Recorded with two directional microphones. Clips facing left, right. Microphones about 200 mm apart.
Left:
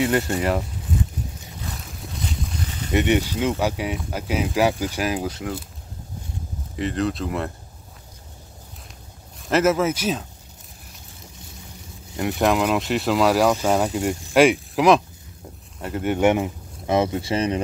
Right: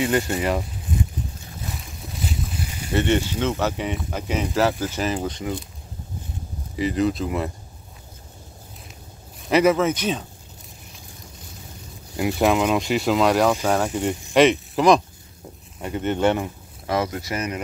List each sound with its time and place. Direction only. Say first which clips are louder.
0.3 s speech: left 1 dB; centre (ahead or behind)
2.5 s a sound: left 1 dB; 10° right (ahead or behind)
2.9 s speech: left 1 dB; 15° left (ahead or behind)
6.8 s speech: right 2 dB; centre (ahead or behind)
9.5 s speech: right 1 dB; 5° left (ahead or behind)
12.2 s speech: right 1 dB; 5° right (ahead or behind); by 17.6 s 30° left (ahead or behind)